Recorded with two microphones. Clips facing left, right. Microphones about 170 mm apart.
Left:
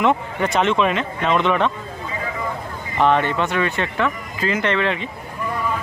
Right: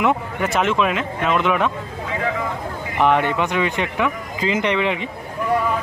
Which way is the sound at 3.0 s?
15° right (ahead or behind).